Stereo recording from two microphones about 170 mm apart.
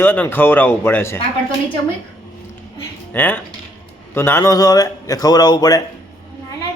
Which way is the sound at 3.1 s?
10° left (ahead or behind).